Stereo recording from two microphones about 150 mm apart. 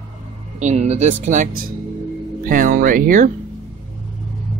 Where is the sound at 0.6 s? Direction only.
50° right (ahead or behind); by 3.3 s 65° right (ahead or behind).